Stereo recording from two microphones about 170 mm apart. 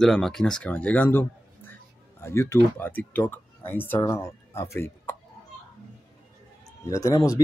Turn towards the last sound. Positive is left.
turn(degrees=20)  # may be behind; listen again after turning